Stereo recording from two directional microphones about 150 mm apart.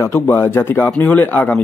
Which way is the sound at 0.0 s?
15° left (ahead or behind).